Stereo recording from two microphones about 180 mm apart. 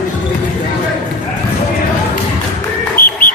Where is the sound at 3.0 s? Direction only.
55° left (ahead or behind).